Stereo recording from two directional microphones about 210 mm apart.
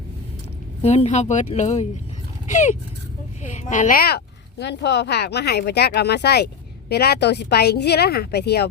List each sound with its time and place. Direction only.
0.8 s speech: 30° left (ahead or behind); by 8.7 s 50° left (ahead or behind)